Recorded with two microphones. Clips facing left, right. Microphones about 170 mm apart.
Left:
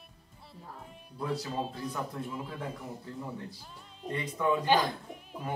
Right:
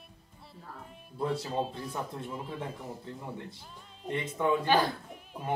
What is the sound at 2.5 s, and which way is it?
Speech, 25° right (ahead or behind).